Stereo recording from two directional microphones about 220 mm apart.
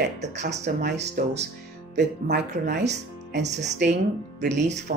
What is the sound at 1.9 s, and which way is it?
Speech, 50° right (ahead or behind).